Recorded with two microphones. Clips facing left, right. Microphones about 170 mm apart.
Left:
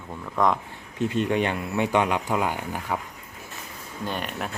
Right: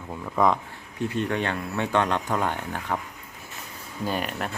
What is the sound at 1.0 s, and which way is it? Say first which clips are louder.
Speech: left 3 dB; 20° left (ahead or behind).